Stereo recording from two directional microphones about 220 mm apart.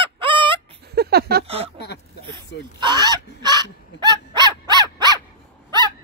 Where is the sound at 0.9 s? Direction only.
45° right (ahead or behind).